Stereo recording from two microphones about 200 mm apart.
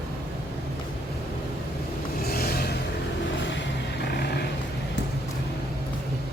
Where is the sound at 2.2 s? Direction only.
50° left (ahead or behind).